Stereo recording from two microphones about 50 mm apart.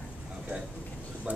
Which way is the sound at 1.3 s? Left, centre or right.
Right.